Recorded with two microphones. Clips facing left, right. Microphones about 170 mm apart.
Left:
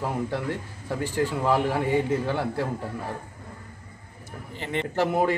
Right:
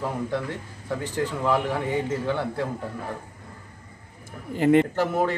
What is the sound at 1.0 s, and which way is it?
A man's voice, 10° left (ahead or behind).